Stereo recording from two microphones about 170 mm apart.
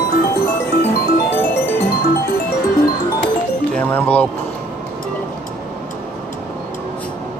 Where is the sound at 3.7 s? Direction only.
10° left (ahead or behind).